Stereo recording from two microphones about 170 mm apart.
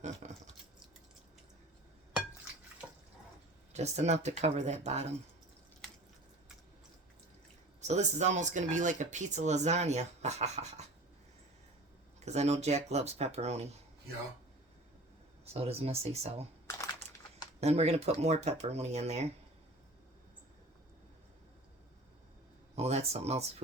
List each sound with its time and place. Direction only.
0.0 s a sound: 45° right (ahead or behind)
3.7 s speech: 40° right (ahead or behind)
7.8 s speech: 40° right (ahead or behind)
12.2 s speech: 40° right (ahead or behind)
15.5 s speech: 35° right (ahead or behind)
16.6 s a sound: 20° left (ahead or behind)
17.6 s speech: 40° right (ahead or behind)
22.7 s speech: 40° right (ahead or behind)